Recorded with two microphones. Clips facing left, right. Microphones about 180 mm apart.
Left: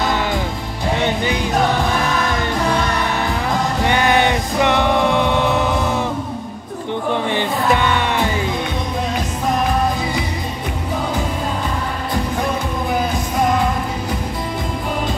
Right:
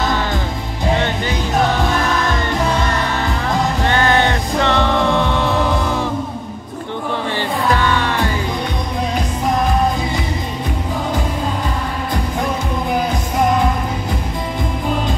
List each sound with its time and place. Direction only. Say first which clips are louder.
3.8 s music: left 1 dB; 15° left (ahead or behind)
7.2 s music: right 1 dB; 20° left (ahead or behind)